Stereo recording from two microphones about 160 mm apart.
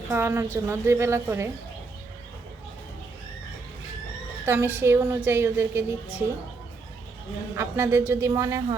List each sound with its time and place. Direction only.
0.1 s a woman's voice: 15° right (ahead or behind)
4.4 s a woman's voice: 15° right (ahead or behind)
7.5 s a woman's voice: 15° right (ahead or behind)